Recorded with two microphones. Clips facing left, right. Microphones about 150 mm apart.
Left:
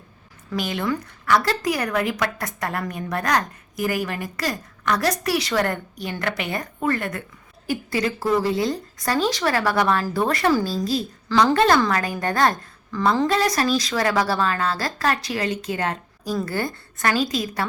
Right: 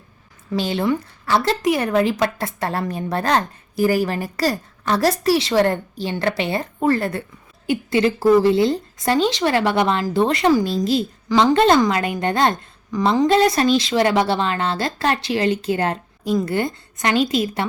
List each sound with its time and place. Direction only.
0.5 s a woman's voice: 30° right (ahead or behind)